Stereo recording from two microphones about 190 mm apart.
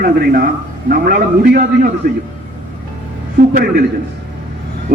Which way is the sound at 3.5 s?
50° right (ahead or behind).